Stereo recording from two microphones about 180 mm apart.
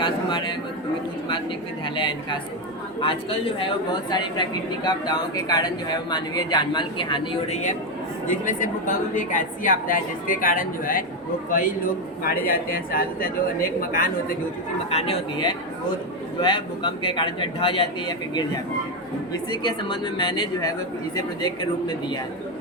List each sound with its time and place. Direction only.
0.0 s a sound: 25° left (ahead or behind)
2.0 s speech: 25° left (ahead or behind)
7.5 s a woman's voice: 45° left (ahead or behind)
14.8 s speech: 35° left (ahead or behind)
19.5 s speech: 25° left (ahead or behind)